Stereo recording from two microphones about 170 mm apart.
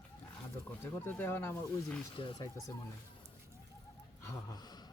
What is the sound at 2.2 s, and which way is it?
Speech, 30° left (ahead or behind).